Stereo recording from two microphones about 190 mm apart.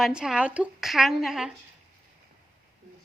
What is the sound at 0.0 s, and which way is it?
A woman's voice, 5° right (ahead or behind).